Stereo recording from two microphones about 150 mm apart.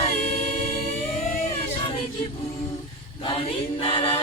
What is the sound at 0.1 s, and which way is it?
Music, 45° left (ahead or behind).